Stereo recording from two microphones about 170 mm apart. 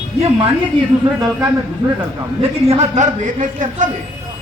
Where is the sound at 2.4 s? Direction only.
35° right (ahead or behind).